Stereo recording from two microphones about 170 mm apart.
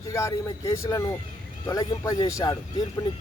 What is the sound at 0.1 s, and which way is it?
Speech, 15° left (ahead or behind).